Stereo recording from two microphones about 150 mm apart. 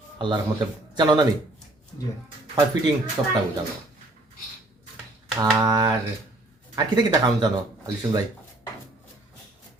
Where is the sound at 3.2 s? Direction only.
25° right (ahead or behind).